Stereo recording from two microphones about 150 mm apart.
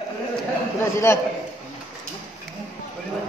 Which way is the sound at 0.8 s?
15° left (ahead or behind).